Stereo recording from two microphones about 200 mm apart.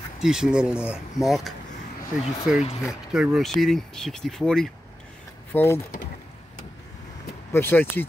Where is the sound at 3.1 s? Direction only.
5° right (ahead or behind); by 5.8 s 10° left (ahead or behind).